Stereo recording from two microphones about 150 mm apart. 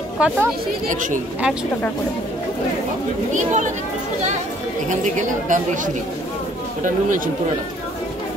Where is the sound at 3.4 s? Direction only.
55° right (ahead or behind).